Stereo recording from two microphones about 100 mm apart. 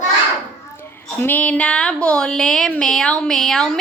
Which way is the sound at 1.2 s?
15° left (ahead or behind).